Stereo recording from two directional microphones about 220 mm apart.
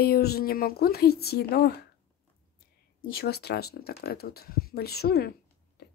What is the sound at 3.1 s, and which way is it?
Speech, 45° left (ahead or behind).